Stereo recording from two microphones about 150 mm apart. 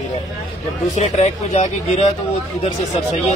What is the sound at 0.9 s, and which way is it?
Speech, 50° left (ahead or behind).